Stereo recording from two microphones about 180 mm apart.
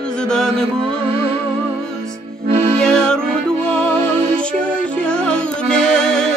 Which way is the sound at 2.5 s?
30° right (ahead or behind).